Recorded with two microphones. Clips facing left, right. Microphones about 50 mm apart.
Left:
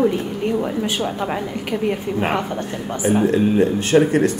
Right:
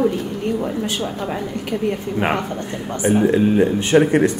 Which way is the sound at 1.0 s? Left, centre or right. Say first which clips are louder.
Left 2 dB; left.